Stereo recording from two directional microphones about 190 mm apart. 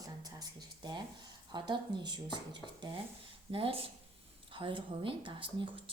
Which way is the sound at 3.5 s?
30° right (ahead or behind).